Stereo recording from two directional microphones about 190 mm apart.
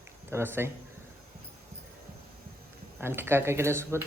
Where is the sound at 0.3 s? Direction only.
10° right (ahead or behind).